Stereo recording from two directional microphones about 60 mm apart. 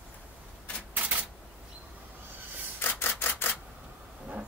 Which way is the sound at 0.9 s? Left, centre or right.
Right.